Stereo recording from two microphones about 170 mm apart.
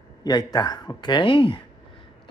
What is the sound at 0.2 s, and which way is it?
Speech, 25° left (ahead or behind).